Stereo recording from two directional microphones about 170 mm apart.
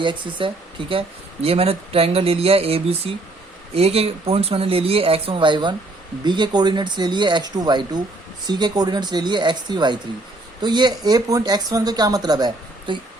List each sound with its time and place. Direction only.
0.0 s speech: 30° right (ahead or behind)